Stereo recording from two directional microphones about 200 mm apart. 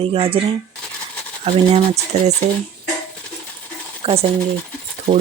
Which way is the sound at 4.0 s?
30° right (ahead or behind).